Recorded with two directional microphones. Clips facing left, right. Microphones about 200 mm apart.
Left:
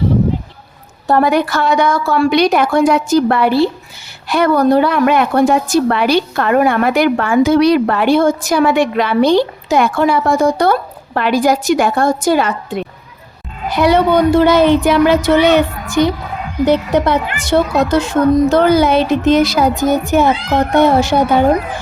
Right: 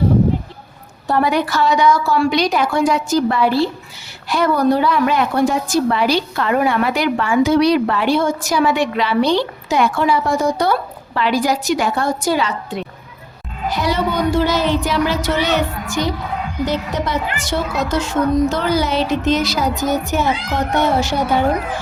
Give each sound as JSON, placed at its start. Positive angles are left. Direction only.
{"t": 1.0, "sound": "a woman's voice", "side_deg": 50}